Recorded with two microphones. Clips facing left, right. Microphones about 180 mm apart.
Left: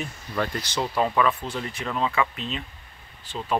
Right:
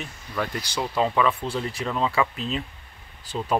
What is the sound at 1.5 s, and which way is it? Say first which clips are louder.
Speech: right 2 dB; 30° right (ahead or behind).